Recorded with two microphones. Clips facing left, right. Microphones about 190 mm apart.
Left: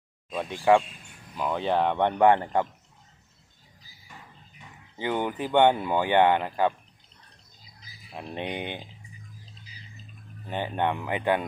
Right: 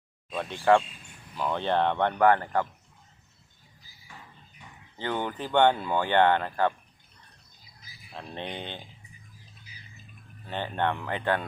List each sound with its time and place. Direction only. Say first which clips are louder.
0.6 s speech: left 1 dB; 5° left (ahead or behind)
4.9 s speech: left 3 dB; 10° left (ahead or behind)
8.1 s speech: left 4 dB; 15° left (ahead or behind)
10.5 s speech: left 1 dB; 10° left (ahead or behind)